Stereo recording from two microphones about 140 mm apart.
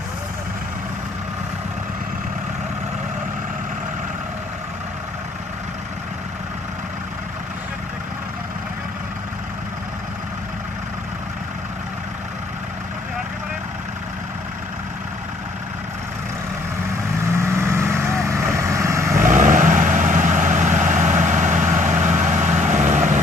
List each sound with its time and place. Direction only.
17.3 s vehicle: 20° right (ahead or behind)
19.1 s vehicle: 65° right (ahead or behind)